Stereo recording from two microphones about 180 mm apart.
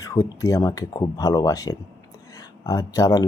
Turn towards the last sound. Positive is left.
turn(degrees=20)  # may be behind; listen again after turning